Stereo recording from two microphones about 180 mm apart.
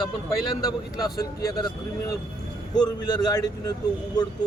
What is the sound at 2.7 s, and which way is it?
Speech, 25° left (ahead or behind).